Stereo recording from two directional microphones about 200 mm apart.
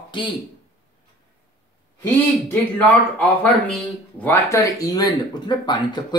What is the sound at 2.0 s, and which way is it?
A woman's voice, 10° left (ahead or behind).